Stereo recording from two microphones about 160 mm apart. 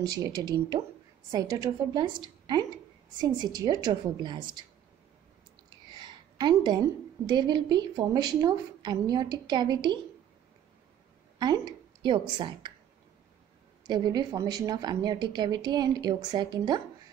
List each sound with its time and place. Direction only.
0.2 s speech: 25° right (ahead or behind)
5.9 s a sound: 25° right (ahead or behind)
7.2 s speech: 25° right (ahead or behind)
11.3 s a woman's voice: 25° right (ahead or behind)
13.8 s speech: 25° right (ahead or behind)